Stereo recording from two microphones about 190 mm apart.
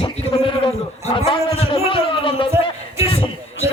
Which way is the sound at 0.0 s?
25° left (ahead or behind).